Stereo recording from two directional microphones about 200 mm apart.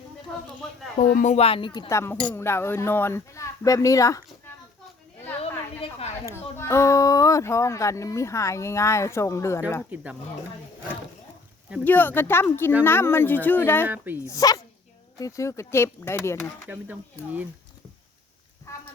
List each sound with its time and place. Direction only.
0.9 s speech: 45° left (ahead or behind); by 4.2 s 15° left (ahead or behind)
5.4 s a sound: 30° left (ahead or behind)
6.6 s speech: 15° left (ahead or behind)
9.9 s speech: 5° right (ahead or behind)
11.9 s speech: 10° left (ahead or behind)
13.8 s speech: 10° right (ahead or behind)
14.3 s speech: 20° left (ahead or behind)
16.6 s speech: 10° right (ahead or behind)